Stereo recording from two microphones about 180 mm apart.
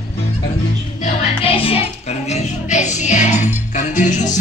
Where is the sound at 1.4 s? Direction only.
30° left (ahead or behind).